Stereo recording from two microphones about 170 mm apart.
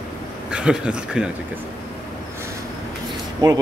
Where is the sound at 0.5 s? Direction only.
5° right (ahead or behind).